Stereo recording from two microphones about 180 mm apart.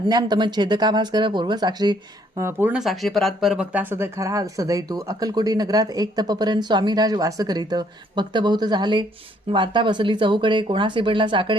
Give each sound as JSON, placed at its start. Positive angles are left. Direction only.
{"t": 0.0, "sound": "speech", "side_deg": -20}
{"t": 2.4, "sound": "speech", "side_deg": -10}